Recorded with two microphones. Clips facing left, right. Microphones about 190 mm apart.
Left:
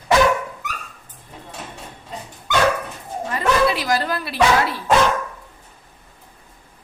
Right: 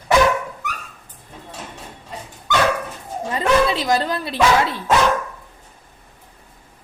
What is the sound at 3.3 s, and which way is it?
A woman's voice, 25° right (ahead or behind).